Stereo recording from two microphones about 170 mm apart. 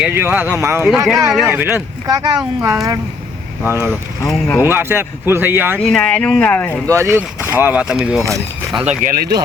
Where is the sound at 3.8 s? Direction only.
15° left (ahead or behind).